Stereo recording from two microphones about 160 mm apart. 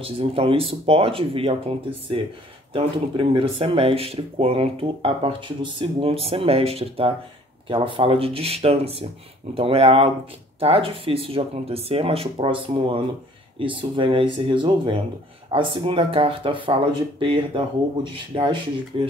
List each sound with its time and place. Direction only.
0.0 s speech: 35° right (ahead or behind)